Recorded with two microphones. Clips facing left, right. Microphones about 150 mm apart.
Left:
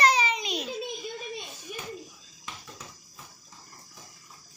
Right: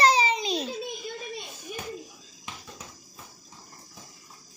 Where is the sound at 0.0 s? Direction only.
30° right (ahead or behind).